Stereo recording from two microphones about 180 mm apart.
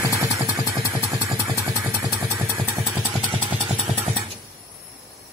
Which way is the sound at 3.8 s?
5° right (ahead or behind).